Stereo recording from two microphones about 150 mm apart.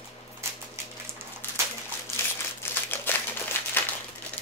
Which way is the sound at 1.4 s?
15° left (ahead or behind).